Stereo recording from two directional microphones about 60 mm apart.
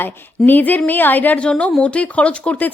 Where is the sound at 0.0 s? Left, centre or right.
Left.